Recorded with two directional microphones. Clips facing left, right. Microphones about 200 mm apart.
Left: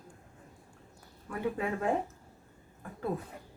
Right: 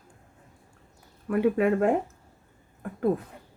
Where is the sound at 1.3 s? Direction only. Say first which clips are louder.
Right 11 dB; 65° right (ahead or behind).